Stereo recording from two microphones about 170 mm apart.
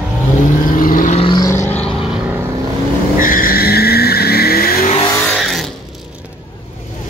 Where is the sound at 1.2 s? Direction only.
30° left (ahead or behind).